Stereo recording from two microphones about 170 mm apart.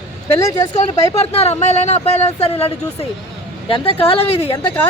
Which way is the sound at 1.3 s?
40° left (ahead or behind).